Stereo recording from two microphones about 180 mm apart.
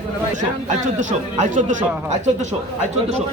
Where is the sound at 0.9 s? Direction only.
45° right (ahead or behind).